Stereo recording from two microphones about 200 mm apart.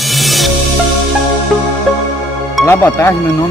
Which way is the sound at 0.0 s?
Centre (ahead or behind).